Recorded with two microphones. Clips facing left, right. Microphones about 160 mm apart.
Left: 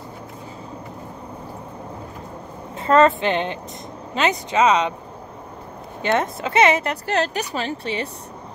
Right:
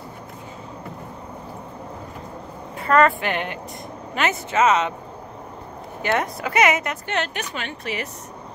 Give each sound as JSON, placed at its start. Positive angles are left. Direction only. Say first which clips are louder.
{"t": 2.8, "sound": "speech", "louder": "left 2 dB", "side_deg": 25}
{"t": 6.0, "sound": "a woman's voice", "louder": "left 2 dB", "side_deg": 25}